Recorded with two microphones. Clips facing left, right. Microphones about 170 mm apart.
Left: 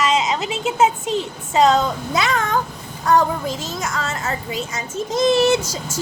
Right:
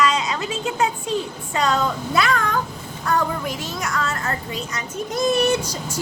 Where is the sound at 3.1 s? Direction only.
90° left.